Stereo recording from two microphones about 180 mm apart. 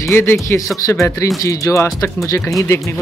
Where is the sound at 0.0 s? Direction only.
10° left (ahead or behind).